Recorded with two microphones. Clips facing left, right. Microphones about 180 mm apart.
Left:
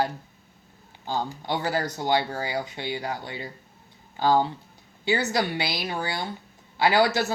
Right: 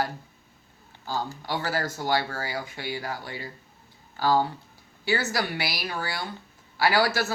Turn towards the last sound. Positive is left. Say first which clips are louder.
# left 2 dB
turn(degrees=20)  # may be behind; listen again after turning